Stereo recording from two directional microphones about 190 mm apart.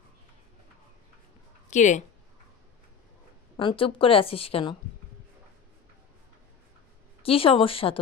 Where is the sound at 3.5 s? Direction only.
25° left (ahead or behind).